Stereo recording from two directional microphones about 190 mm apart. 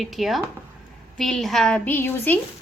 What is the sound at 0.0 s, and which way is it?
A woman's voice, centre (ahead or behind).